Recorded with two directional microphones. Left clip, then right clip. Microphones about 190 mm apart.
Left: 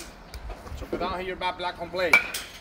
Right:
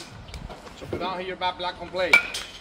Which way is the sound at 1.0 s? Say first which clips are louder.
Right 2 dB; 55° left (ahead or behind).